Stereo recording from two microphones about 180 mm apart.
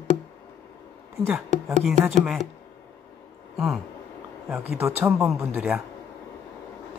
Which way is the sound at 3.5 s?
Centre (ahead or behind).